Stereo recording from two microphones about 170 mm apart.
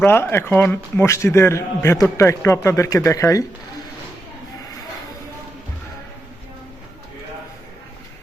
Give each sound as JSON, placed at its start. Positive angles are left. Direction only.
{"t": 0.0, "sound": "a man's voice", "side_deg": 15}